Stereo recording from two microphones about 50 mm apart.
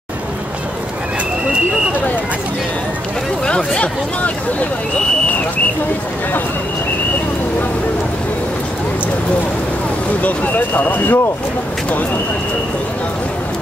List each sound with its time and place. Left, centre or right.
3.4 s speech: centre
10.2 s speech: left